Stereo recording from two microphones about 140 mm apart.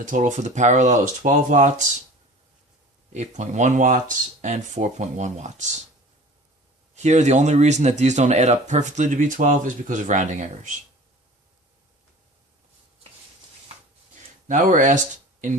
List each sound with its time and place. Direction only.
0.0 s speech: 65° right (ahead or behind)
3.1 s speech: 55° right (ahead or behind)
6.9 s speech: 55° right (ahead or behind)
14.4 s speech: 65° right (ahead or behind)